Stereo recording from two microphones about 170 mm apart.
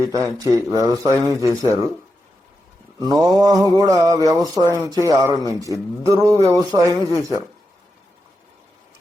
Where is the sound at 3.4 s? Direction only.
20° right (ahead or behind).